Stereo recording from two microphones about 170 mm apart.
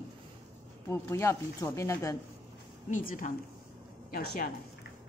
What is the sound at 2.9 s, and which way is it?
A woman's voice, 55° left (ahead or behind).